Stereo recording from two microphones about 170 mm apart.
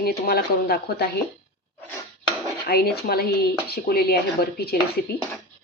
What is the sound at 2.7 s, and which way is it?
Speech, 65° left (ahead or behind).